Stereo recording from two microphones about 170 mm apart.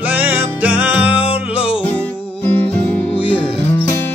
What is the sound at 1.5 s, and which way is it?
Music, 35° left (ahead or behind).